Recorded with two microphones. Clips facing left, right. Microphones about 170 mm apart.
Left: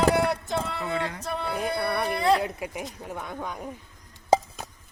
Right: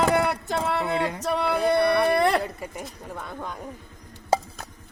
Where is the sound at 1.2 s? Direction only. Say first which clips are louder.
Right 6 dB; 70° right (ahead or behind).